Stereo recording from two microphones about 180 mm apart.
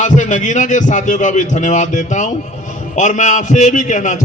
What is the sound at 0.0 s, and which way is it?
A man's voice, 45° left (ahead or behind).